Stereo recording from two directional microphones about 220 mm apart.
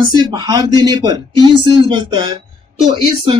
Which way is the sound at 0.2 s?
20° right (ahead or behind).